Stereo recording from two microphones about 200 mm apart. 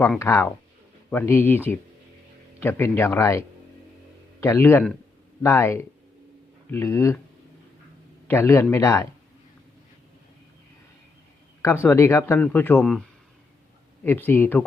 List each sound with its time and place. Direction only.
0.0 s a man's voice: 10° left (ahead or behind)
8.3 s speech: 15° left (ahead or behind)
11.6 s speech: 10° left (ahead or behind)
14.0 s speech: 10° left (ahead or behind)